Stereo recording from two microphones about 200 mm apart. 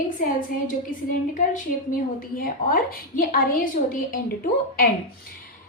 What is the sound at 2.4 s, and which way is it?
A woman's voice, 45° left (ahead or behind).